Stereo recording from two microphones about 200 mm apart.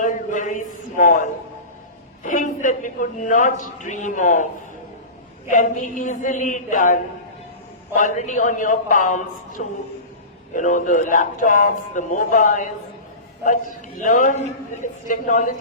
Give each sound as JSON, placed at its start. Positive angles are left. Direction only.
{"t": 0.0, "sound": "a sound", "side_deg": 40}
{"t": 2.2, "sound": "a man's voice", "side_deg": 40}
{"t": 5.5, "sound": "a man's voice", "side_deg": 40}
{"t": 14.0, "sound": "a man's voice", "side_deg": 40}